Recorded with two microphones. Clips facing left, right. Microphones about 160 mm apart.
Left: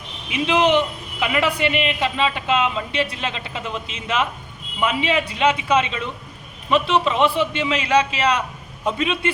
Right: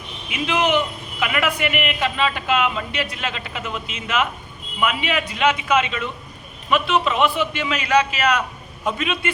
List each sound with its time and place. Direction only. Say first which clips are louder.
0.3 s a man's voice: left 3 dB; 30° left (ahead or behind)